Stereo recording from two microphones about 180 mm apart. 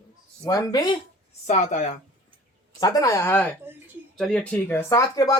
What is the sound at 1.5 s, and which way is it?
Speech, 40° left (ahead or behind).